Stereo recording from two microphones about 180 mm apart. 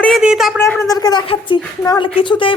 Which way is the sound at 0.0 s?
Centre (ahead or behind).